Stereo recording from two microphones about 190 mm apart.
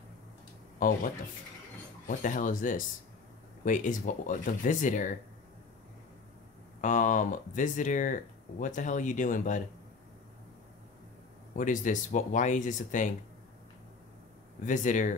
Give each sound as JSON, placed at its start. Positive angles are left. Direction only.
{"t": 0.7, "sound": "speech", "side_deg": 45}
{"t": 6.8, "sound": "speech", "side_deg": 45}
{"t": 11.5, "sound": "speech", "side_deg": 45}
{"t": 14.6, "sound": "speech", "side_deg": 40}